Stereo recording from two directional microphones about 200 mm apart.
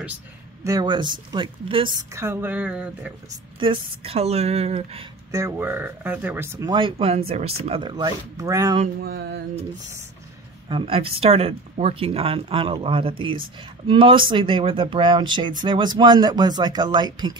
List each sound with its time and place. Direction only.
0.7 s speech: 20° right (ahead or behind)
2.1 s speech: 10° right (ahead or behind)
3.5 s speech: 25° right (ahead or behind)
5.3 s speech: 15° right (ahead or behind)
6.7 s speech: 25° right (ahead or behind)
10.7 s speech: 25° right (ahead or behind)